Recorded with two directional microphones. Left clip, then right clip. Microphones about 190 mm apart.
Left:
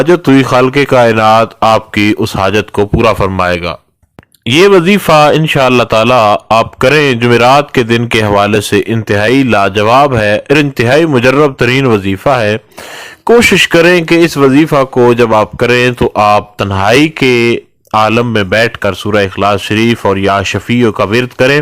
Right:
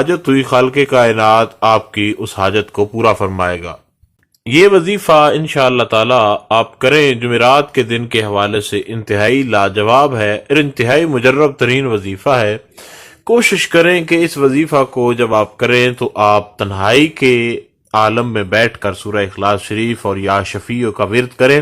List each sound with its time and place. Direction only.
0.0 s speech: 35° left (ahead or behind)